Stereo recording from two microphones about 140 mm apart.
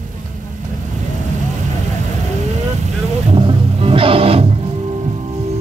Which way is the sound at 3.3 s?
40° right (ahead or behind).